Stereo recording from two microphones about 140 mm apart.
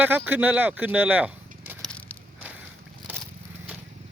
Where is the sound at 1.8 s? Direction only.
10° left (ahead or behind).